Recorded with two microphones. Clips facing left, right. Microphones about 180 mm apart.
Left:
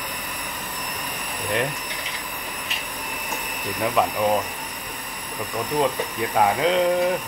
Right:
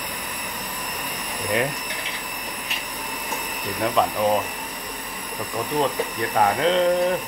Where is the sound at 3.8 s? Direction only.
5° left (ahead or behind).